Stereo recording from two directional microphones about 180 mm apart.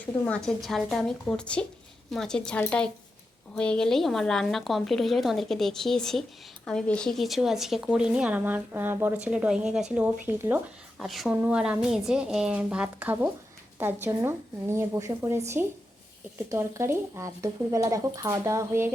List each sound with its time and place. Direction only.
0.3 s speech: centre (ahead or behind)
10.3 s speech: 20° right (ahead or behind)
11.0 s speech: centre (ahead or behind)
16.5 s speech: 15° right (ahead or behind)